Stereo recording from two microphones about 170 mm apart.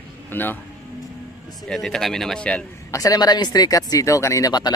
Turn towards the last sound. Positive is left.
turn(degrees=25)  # may be behind; listen again after turning